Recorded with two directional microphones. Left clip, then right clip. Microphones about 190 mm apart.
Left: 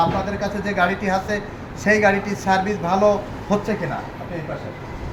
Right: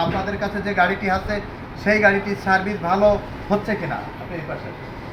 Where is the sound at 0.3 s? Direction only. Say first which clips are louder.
Right 1 dB; 25° left (ahead or behind).